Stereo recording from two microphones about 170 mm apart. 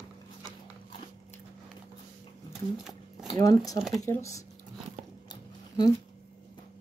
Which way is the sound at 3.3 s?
20° left (ahead or behind).